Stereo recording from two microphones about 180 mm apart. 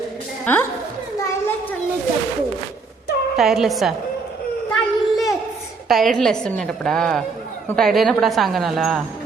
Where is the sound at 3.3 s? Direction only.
Centre (ahead or behind).